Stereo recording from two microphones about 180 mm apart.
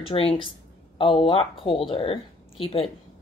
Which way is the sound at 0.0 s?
30° left (ahead or behind).